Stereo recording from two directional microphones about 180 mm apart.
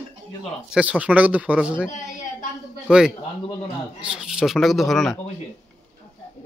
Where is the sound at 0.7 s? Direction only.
5° right (ahead or behind).